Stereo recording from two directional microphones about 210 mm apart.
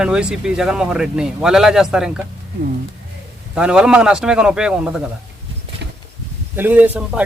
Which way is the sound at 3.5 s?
5° right (ahead or behind).